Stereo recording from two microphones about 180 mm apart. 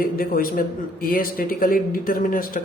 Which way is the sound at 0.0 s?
55° left (ahead or behind).